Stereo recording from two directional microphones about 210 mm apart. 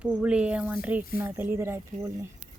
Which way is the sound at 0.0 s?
5° right (ahead or behind).